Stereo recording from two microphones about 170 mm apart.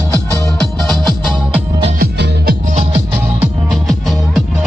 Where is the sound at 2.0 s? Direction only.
60° right (ahead or behind).